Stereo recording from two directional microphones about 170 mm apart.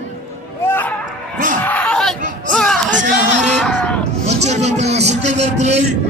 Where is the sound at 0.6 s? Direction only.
15° left (ahead or behind).